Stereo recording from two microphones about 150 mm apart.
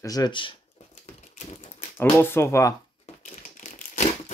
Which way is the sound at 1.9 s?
15° left (ahead or behind).